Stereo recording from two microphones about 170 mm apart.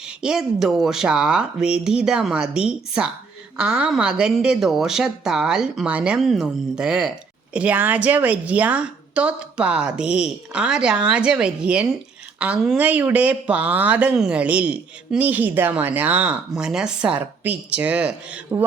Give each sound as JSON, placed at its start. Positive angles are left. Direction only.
{"t": 0.2, "sound": "a woman's voice", "side_deg": -5}